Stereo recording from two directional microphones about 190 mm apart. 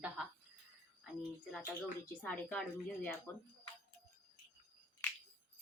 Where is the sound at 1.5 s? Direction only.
5° left (ahead or behind).